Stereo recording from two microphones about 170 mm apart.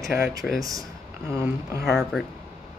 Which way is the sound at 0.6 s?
20° right (ahead or behind).